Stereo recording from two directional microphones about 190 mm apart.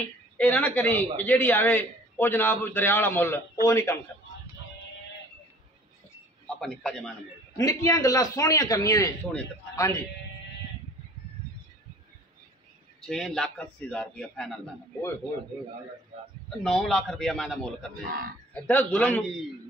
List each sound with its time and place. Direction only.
0.4 s a man's voice: 10° left (ahead or behind)
6.4 s a man's voice: 5° left (ahead or behind)
7.5 s a man's voice: 15° left (ahead or behind)
13.0 s a man's voice: 5° left (ahead or behind)
16.4 s a man's voice: centre (ahead or behind)